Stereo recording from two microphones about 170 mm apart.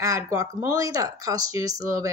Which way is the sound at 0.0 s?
20° right (ahead or behind).